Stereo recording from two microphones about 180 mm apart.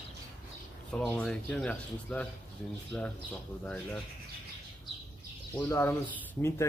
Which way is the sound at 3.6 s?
5° left (ahead or behind).